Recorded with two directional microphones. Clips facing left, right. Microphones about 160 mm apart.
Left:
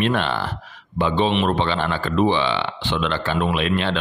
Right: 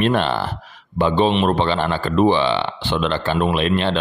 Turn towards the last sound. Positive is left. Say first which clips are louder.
# right 3 dB
turn(degrees=-30)  # may be behind; listen again after turning